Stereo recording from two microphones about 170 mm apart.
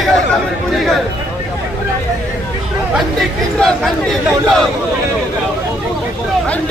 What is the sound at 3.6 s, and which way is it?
Speech, 5° left (ahead or behind).